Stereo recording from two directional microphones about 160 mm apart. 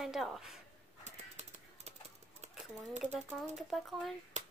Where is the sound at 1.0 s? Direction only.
45° right (ahead or behind).